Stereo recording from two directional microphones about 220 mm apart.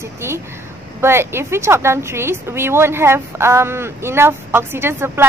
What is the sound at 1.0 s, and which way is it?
Speech, 10° right (ahead or behind).